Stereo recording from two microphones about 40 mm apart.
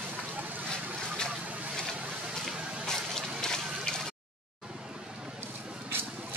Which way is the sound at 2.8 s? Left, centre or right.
Centre.